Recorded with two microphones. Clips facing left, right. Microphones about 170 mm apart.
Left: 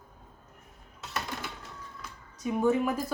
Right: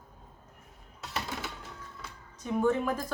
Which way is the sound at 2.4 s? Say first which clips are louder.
Left 2 dB; 10° left (ahead or behind).